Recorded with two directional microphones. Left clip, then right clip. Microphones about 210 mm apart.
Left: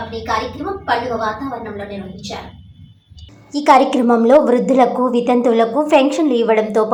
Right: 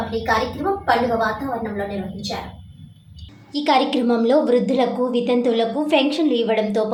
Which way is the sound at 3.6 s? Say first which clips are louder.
Left 7 dB; 5° left (ahead or behind).